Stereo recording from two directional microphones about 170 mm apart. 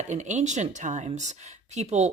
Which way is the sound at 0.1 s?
45° right (ahead or behind).